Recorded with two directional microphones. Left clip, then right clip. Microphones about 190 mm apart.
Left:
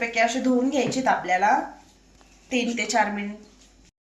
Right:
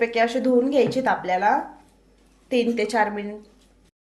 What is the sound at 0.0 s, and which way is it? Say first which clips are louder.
A woman's voice: right 2 dB; 65° right (ahead or behind).